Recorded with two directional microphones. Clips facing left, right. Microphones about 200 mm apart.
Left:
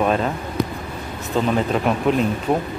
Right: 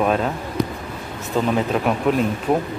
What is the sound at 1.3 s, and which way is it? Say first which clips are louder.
Speech: even; 5° right (ahead or behind).